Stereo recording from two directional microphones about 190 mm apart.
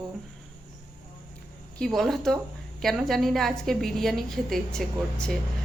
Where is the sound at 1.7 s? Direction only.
Centre (ahead or behind).